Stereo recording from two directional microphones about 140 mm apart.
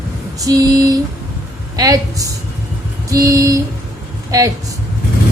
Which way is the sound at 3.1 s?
25° right (ahead or behind).